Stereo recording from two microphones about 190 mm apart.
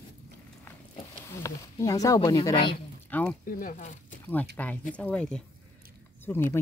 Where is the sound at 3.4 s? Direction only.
45° left (ahead or behind).